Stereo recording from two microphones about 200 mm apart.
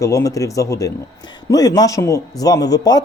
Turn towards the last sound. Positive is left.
turn(degrees=20)  # may be behind; listen again after turning